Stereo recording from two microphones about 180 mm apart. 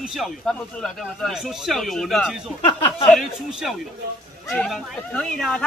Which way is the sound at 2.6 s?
30° left (ahead or behind).